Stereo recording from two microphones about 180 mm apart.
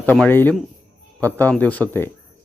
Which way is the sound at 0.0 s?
10° left (ahead or behind).